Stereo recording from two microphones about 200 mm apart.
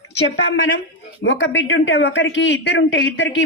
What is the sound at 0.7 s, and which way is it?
A man's voice, 65° left (ahead or behind).